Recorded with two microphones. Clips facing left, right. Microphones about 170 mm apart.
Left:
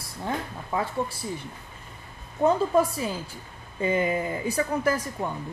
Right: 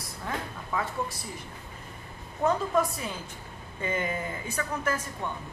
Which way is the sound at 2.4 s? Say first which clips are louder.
Left 4 dB; 30° left (ahead or behind).